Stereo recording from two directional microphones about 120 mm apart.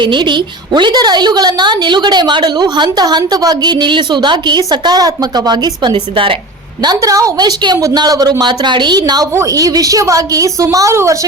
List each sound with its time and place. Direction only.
0.0 s a woman's voice: 40° right (ahead or behind)
6.8 s a woman's voice: 30° right (ahead or behind)